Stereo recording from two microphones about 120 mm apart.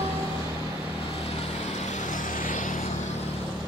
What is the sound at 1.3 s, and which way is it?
Vehicle, 60° left (ahead or behind).